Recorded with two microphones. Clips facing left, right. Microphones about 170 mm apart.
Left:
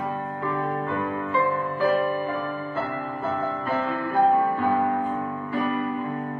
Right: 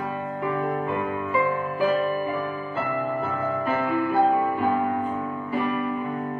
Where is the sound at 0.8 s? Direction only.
15° right (ahead or behind).